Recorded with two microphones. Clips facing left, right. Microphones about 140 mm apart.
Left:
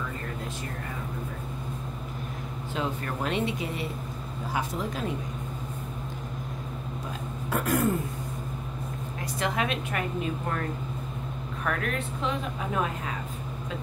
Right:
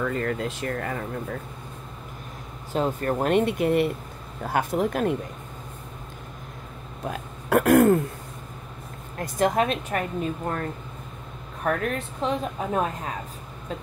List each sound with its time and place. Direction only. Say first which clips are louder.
0.0 s speech: right 9 dB; 90° right
2.7 s speech: right 7 dB; 45° right (ahead or behind)
7.1 s speech: right 8 dB; 65° right (ahead or behind)
9.2 s speech: right 7 dB; 45° right (ahead or behind)
11.6 s speech: right 5 dB; 35° right (ahead or behind)